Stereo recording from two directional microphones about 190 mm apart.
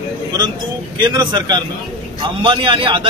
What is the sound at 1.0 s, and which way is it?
Speech, 20° right (ahead or behind).